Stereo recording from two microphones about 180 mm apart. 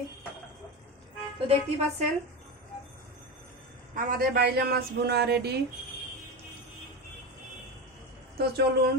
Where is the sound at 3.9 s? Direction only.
55° right (ahead or behind).